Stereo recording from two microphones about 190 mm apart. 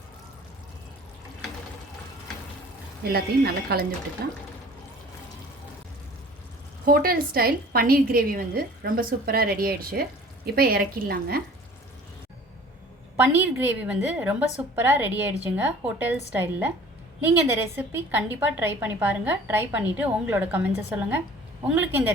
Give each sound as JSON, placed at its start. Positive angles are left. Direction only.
{"t": 3.0, "sound": "speech", "side_deg": -55}
{"t": 6.8, "sound": "a woman's voice", "side_deg": -50}
{"t": 13.1, "sound": "a woman's voice", "side_deg": -10}
{"t": 17.7, "sound": "a woman's voice", "side_deg": -10}